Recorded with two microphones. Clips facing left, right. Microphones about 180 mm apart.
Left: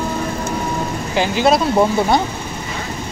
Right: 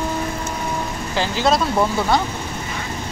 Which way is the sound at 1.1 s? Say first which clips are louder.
Left 4 dB; 15° left (ahead or behind).